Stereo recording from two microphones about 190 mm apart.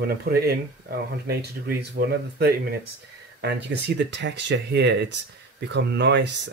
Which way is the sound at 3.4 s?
60° right (ahead or behind).